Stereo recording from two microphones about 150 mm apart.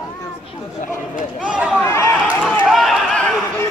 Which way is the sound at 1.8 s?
15° left (ahead or behind).